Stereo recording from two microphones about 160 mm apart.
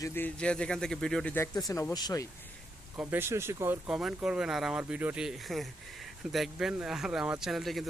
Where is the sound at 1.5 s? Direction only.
20° left (ahead or behind).